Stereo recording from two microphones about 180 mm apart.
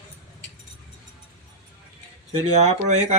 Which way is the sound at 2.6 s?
40° right (ahead or behind).